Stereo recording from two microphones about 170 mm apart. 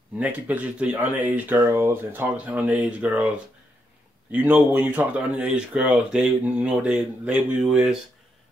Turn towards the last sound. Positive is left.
turn(degrees=-5)  # may be behind; listen again after turning